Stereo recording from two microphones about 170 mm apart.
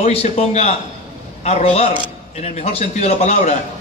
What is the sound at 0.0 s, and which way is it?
Speech, 40° left (ahead or behind).